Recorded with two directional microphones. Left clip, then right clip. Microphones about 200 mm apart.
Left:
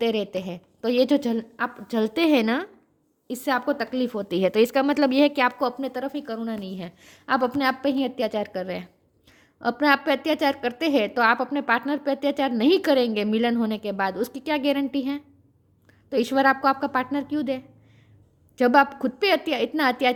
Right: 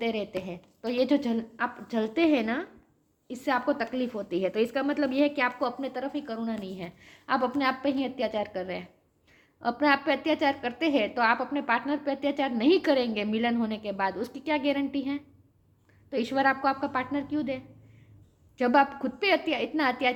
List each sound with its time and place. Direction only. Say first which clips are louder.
0.0 s a woman's voice: left 6 dB; 55° left (ahead or behind)